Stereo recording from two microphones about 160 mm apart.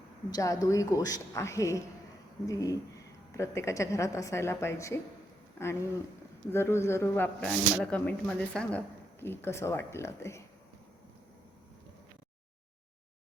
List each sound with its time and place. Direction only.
0.3 s a woman's voice: 20° left (ahead or behind)